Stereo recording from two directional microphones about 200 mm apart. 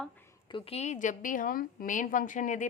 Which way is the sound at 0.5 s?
30° left (ahead or behind).